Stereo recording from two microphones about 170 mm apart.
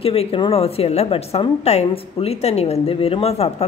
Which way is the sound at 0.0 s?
35° left (ahead or behind).